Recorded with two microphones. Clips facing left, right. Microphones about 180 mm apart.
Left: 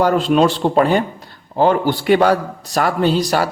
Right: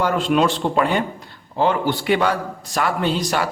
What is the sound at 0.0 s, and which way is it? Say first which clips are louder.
A man's voice: left 4 dB; 35° left (ahead or behind).